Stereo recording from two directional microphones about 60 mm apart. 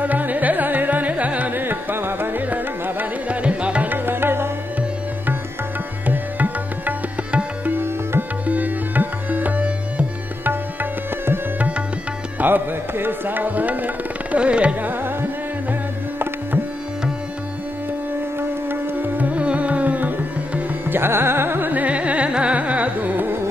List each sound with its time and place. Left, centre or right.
0.0 s carnatic music: right
3.4 s music: centre
3.9 s music: right
6.0 s music: right
7.8 s music: right
8.5 s music: right
10.5 s music: right
12.4 s tabla: right
18.7 s music: right